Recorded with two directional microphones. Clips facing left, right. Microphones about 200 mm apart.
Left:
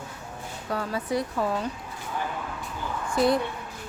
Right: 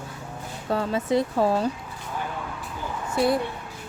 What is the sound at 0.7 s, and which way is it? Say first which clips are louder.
Speech: right 5 dB; 25° right (ahead or behind).